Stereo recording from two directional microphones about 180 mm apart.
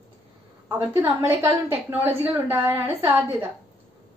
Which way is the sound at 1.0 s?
15° right (ahead or behind).